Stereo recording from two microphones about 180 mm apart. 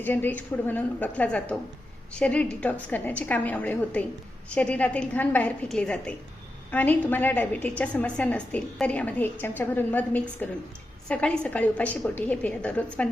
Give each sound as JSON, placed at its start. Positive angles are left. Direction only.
{"t": 0.0, "sound": "a woman's voice", "side_deg": 10}